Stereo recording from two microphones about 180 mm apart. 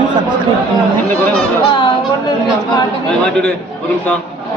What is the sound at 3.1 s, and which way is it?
Speech, 5° left (ahead or behind).